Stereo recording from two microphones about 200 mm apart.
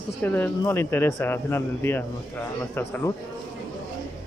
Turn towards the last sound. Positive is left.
turn(degrees=10)  # may be behind; listen again after turning